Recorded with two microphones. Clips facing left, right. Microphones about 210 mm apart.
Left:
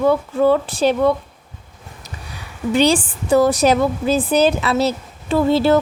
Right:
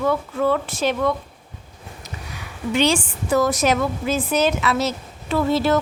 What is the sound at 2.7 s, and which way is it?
A woman's voice, 35° left (ahead or behind).